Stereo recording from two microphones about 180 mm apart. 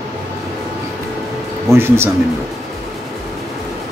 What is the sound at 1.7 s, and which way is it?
Speech, 15° right (ahead or behind).